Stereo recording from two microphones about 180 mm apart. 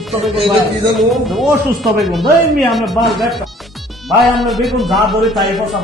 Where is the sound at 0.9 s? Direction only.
Centre (ahead or behind).